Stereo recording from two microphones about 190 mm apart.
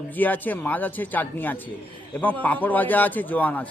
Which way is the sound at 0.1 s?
10° left (ahead or behind).